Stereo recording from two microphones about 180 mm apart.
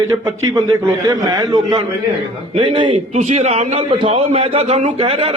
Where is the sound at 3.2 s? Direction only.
40° right (ahead or behind).